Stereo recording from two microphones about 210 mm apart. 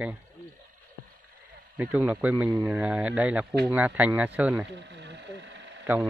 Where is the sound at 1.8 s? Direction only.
5° right (ahead or behind).